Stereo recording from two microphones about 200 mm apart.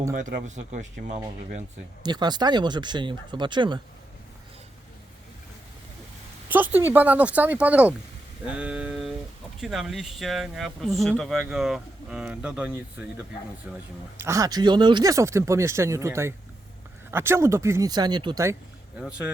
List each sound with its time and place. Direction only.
0.1 s speech: 45° right (ahead or behind)
2.0 s speech: 20° right (ahead or behind)
6.5 s speech: 10° right (ahead or behind)
18.9 s speech: 5° right (ahead or behind)